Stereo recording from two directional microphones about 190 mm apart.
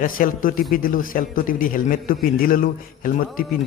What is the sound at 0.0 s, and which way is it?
A man's voice, 50° left (ahead or behind).